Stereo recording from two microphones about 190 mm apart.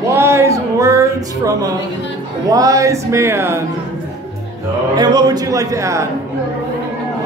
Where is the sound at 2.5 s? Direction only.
20° right (ahead or behind).